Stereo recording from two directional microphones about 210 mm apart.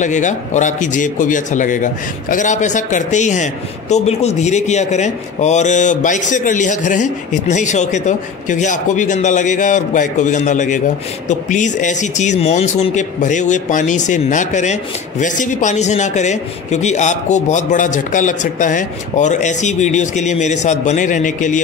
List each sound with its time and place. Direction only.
0.0 s speech: 35° left (ahead or behind)